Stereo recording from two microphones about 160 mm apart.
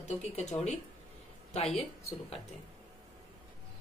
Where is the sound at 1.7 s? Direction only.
40° left (ahead or behind).